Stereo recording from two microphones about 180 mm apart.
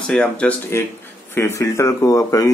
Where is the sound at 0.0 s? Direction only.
5° left (ahead or behind).